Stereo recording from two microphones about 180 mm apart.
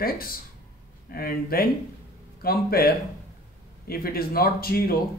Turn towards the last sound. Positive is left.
turn(degrees=55)  # may be behind; listen again after turning